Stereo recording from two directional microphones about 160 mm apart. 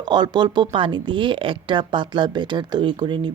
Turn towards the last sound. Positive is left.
turn(degrees=-30)  # may be behind; listen again after turning